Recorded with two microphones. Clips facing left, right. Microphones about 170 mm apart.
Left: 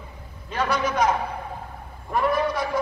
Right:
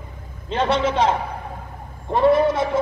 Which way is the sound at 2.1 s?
25° right (ahead or behind).